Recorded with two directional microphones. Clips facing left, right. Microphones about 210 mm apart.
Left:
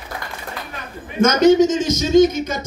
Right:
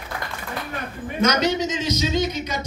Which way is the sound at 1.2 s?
50° left (ahead or behind).